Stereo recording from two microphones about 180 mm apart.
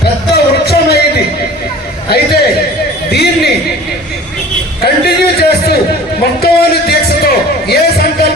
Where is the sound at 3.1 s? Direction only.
60° left (ahead or behind).